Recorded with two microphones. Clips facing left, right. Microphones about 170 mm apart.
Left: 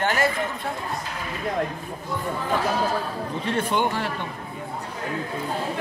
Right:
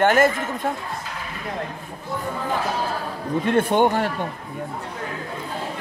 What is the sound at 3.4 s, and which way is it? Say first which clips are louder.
Speech: right 6 dB; 55° right (ahead or behind).